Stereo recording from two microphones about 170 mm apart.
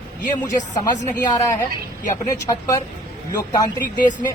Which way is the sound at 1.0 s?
15° left (ahead or behind).